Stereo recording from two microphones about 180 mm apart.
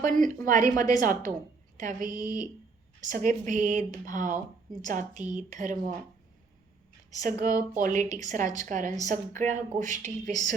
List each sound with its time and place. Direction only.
0.0 s a woman's voice: 45° right (ahead or behind)
7.8 s a woman's voice: 45° right (ahead or behind)